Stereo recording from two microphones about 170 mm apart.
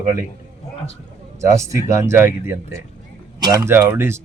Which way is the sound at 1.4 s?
20° right (ahead or behind).